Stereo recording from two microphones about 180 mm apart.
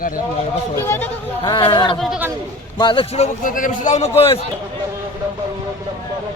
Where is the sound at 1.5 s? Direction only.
25° left (ahead or behind).